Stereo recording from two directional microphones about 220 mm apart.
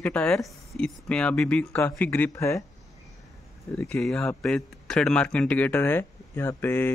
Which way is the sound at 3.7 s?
5° left (ahead or behind).